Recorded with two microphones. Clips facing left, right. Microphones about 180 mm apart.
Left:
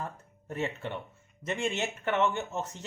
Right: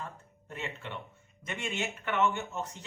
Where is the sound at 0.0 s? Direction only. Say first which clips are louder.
Left 4 dB; 40° left (ahead or behind).